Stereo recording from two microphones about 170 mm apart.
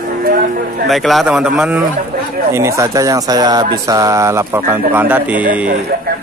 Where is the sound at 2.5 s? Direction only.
15° right (ahead or behind).